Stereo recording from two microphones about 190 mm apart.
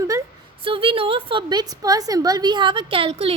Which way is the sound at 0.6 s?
30° right (ahead or behind).